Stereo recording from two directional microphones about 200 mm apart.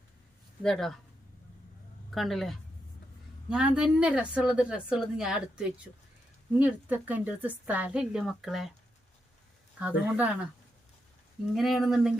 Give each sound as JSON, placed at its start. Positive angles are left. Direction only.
{"t": 0.6, "sound": "a woman's voice", "side_deg": 0}
{"t": 2.1, "sound": "a woman's voice", "side_deg": 0}
{"t": 9.7, "sound": "a woman's voice", "side_deg": -5}
{"t": 11.5, "sound": "a woman's voice", "side_deg": 0}